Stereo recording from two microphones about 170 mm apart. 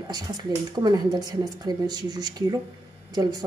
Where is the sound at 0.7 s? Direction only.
25° right (ahead or behind).